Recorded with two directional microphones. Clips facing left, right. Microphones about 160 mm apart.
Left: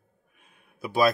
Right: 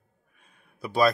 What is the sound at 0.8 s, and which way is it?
Speech, 5° left (ahead or behind).